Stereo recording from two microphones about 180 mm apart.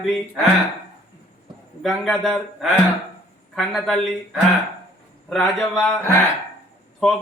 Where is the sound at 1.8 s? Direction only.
Centre (ahead or behind).